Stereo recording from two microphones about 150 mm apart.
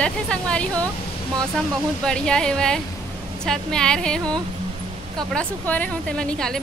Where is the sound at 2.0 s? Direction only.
5° left (ahead or behind).